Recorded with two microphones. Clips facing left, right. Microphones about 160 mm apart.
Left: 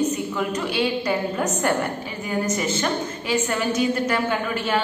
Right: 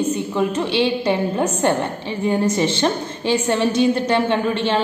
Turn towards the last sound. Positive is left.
turn(degrees=-25)  # may be behind; listen again after turning